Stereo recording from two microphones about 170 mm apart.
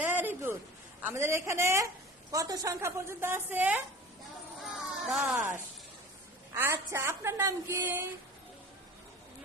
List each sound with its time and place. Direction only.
0.0 s a sound: 10° right (ahead or behind)
1.0 s a woman's voice: 15° right (ahead or behind)
5.0 s speech: 5° right (ahead or behind)
5.3 s a woman's voice: 15° right (ahead or behind)
6.6 s a woman's voice: 15° right (ahead or behind)